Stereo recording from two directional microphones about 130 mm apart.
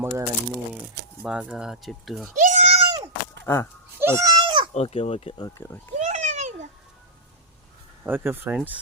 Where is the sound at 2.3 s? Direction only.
70° right (ahead or behind).